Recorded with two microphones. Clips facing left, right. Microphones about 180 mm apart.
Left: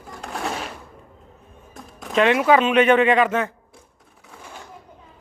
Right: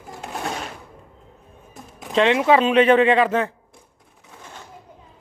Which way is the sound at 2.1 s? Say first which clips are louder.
Even; 25° right (ahead or behind).